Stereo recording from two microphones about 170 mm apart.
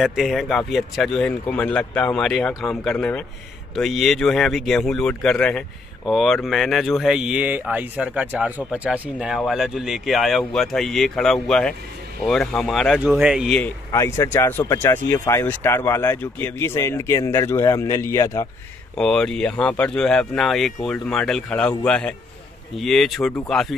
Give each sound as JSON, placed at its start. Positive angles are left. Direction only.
{"t": 0.0, "sound": "speech", "side_deg": 0}
{"t": 13.6, "sound": "speech", "side_deg": 15}
{"t": 18.9, "sound": "speech", "side_deg": 5}